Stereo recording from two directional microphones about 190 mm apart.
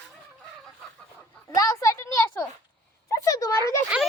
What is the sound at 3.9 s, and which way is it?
Speech, 5° right (ahead or behind).